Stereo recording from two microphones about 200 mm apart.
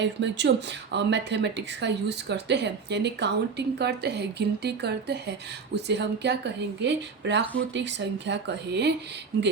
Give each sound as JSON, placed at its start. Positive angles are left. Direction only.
{"t": 0.0, "sound": "speech", "side_deg": -60}